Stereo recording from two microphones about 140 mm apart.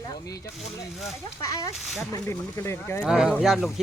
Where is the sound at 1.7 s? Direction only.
Centre (ahead or behind).